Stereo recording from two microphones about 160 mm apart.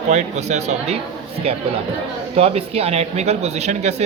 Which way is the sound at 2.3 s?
40° right (ahead or behind).